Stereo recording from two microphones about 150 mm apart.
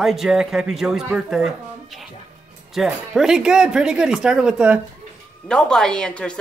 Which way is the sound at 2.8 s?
5° right (ahead or behind).